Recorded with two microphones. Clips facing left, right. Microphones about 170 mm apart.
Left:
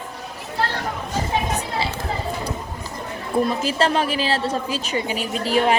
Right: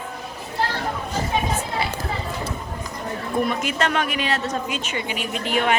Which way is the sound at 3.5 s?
30° left (ahead or behind).